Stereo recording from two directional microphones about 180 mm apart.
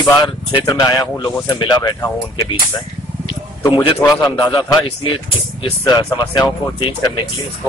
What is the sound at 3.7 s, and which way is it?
A man's voice, 30° left (ahead or behind).